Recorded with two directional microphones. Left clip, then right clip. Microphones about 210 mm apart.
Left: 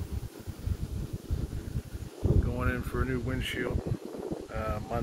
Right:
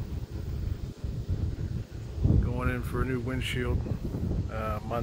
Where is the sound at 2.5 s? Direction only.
10° right (ahead or behind).